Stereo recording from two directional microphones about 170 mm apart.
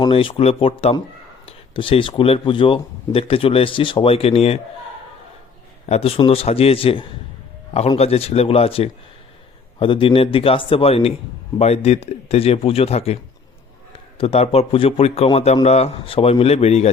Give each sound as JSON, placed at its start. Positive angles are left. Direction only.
{"t": 0.0, "sound": "speech", "side_deg": 30}
{"t": 5.8, "sound": "speech", "side_deg": 35}
{"t": 14.2, "sound": "speech", "side_deg": 35}